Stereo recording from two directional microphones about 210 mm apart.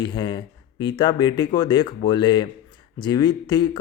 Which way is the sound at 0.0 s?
20° left (ahead or behind).